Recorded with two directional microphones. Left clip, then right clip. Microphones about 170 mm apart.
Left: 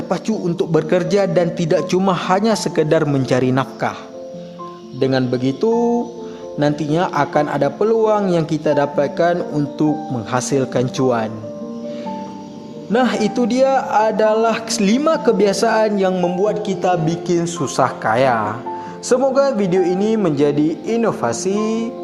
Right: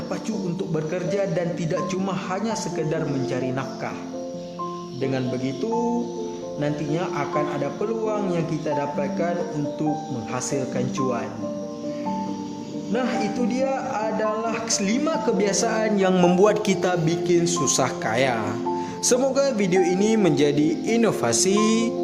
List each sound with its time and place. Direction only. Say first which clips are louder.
0.1 s a man's voice: left 10 dB; 45° left (ahead or behind)
4.9 s a man's voice: left 9 dB; 35° left (ahead or behind)
6.6 s a man's voice: left 9 dB; 35° left (ahead or behind)
12.9 s a man's voice: left 8 dB; 40° left (ahead or behind)
16.1 s speech: even; 15° right (ahead or behind)
16.8 s speech: left 5 dB; 5° left (ahead or behind); by 21.9 s 10° right (ahead or behind)